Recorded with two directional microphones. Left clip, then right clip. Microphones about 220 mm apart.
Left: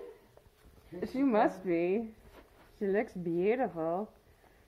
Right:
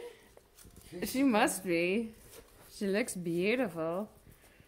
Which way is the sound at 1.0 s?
40° right (ahead or behind).